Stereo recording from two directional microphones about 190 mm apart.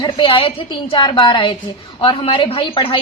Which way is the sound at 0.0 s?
25° left (ahead or behind).